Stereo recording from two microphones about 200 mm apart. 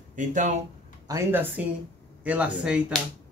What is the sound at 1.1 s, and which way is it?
Speech, 15° right (ahead or behind).